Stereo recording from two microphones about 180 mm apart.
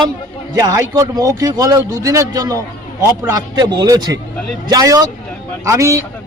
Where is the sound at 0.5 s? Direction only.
20° right (ahead or behind).